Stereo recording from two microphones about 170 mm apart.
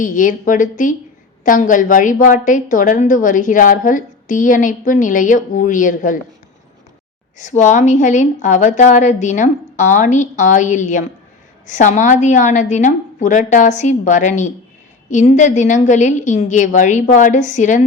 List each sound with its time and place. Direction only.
0.0 s a woman's voice: 50° left (ahead or behind)
7.3 s a woman's voice: 45° left (ahead or behind)